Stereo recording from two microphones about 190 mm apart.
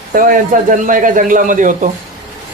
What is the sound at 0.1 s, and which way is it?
A man's voice, 50° right (ahead or behind).